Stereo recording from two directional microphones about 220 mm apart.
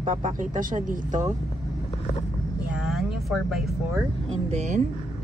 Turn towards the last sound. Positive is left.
turn(degrees=-35)  # may be behind; listen again after turning